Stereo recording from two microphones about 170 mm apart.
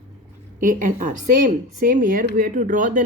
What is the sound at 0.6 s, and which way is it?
Speech, 50° right (ahead or behind).